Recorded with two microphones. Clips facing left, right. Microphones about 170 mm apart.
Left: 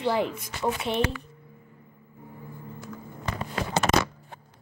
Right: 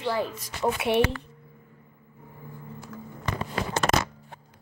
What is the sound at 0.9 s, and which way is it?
Speech, 60° right (ahead or behind).